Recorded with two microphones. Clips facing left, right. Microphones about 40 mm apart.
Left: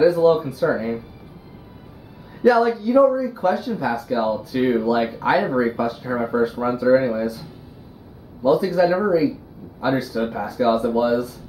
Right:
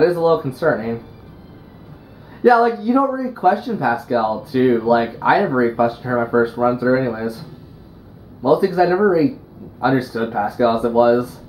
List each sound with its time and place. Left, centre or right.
0.0 s speech: centre
2.4 s speech: centre
8.5 s speech: centre
10.0 s speech: centre